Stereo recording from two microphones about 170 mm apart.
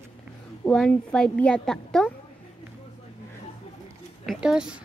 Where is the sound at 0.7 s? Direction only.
5° left (ahead or behind).